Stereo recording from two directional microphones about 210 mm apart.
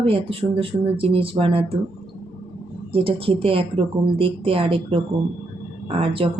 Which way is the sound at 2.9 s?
25° right (ahead or behind).